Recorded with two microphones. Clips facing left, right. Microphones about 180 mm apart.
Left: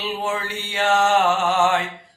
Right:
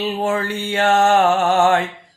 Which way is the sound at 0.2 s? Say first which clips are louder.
Right 6 dB; 50° right (ahead or behind).